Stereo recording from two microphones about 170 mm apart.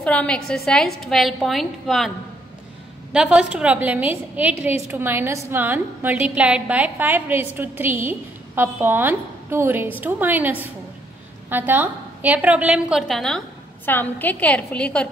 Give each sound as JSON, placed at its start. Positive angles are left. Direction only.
{"t": 0.0, "sound": "a woman's voice", "side_deg": 5}
{"t": 13.8, "sound": "a woman's voice", "side_deg": 10}